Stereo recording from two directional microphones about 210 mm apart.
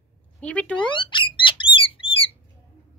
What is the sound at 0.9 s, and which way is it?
Bird, 20° left (ahead or behind).